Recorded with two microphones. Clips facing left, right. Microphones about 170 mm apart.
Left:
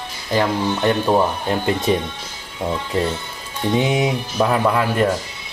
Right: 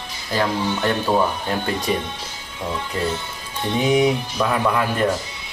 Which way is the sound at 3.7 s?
30° left (ahead or behind).